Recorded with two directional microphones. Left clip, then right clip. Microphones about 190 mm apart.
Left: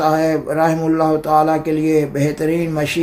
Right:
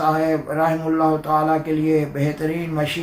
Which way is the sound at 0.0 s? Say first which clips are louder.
Left 3 dB; 50° left (ahead or behind).